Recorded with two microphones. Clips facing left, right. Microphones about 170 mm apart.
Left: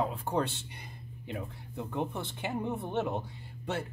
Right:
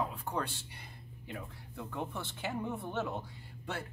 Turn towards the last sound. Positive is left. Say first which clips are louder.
# left 6 dB
turn(degrees=20)  # may be behind; listen again after turning